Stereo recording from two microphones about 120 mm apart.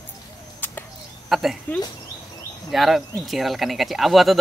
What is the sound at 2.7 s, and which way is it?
Speech, centre (ahead or behind).